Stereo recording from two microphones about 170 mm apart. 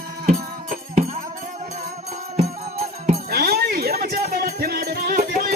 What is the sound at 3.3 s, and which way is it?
Music, 65° right (ahead or behind).